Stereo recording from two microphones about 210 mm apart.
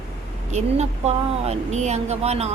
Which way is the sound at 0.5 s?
30° right (ahead or behind).